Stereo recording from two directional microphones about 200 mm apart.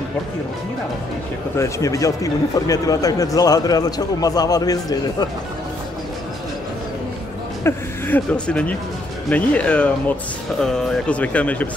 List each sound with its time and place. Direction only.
1.6 s a man's voice: 15° left (ahead or behind)
7.6 s a man's voice: 10° left (ahead or behind)